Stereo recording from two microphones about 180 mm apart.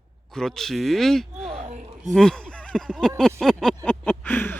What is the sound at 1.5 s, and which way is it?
Speech, 40° right (ahead or behind).